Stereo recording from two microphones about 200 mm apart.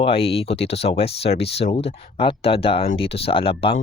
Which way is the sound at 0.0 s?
30° left (ahead or behind).